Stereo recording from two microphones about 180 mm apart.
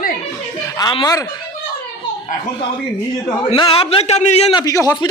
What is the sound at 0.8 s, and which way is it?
Speech, 25° left (ahead or behind).